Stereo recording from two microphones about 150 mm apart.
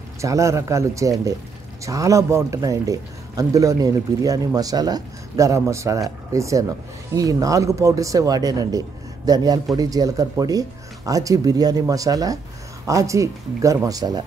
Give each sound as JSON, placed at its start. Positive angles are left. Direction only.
{"t": 0.2, "sound": "a man's voice", "side_deg": -20}